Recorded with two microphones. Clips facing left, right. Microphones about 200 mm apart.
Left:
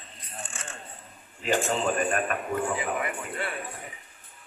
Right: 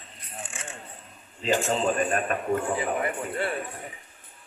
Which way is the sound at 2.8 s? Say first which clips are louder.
Right 3 dB; 35° right (ahead or behind).